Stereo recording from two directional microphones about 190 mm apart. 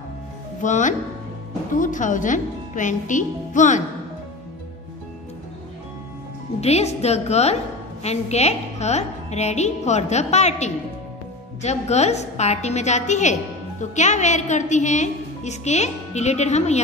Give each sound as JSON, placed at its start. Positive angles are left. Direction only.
{"t": 0.6, "sound": "a woman's voice", "side_deg": 40}
{"t": 6.6, "sound": "a woman's voice", "side_deg": 35}